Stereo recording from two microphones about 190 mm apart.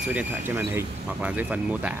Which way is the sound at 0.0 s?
5° right (ahead or behind).